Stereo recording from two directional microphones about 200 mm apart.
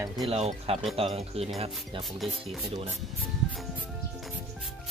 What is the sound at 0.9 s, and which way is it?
Speech, 30° right (ahead or behind).